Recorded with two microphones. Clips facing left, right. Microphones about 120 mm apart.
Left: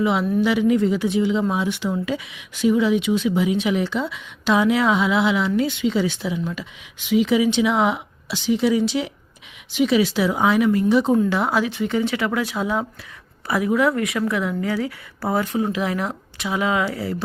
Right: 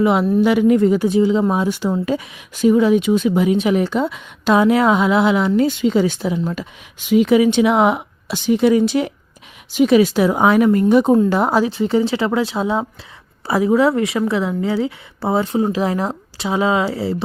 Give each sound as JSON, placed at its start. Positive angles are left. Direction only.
{"t": 0.0, "sound": "a woman's voice", "side_deg": -50}